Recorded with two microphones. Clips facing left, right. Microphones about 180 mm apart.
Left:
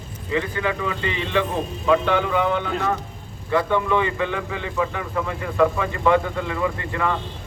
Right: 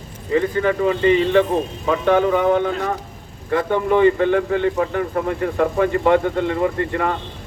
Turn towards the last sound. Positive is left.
turn(degrees=-50)  # may be behind; listen again after turning